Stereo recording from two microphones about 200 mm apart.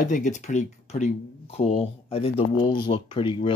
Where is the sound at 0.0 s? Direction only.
40° left (ahead or behind).